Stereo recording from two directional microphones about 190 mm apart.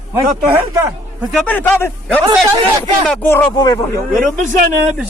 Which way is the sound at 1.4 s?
10° left (ahead or behind).